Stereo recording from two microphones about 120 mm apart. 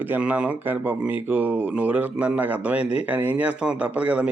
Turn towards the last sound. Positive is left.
turn(degrees=-10)  # may be behind; listen again after turning